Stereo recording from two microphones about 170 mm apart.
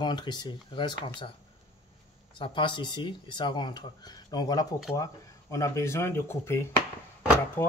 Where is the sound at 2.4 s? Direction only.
30° left (ahead or behind).